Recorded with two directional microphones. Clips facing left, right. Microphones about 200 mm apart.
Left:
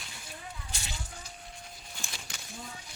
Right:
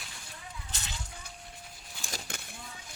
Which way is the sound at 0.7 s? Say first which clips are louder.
Left 1 dB; 10° left (ahead or behind).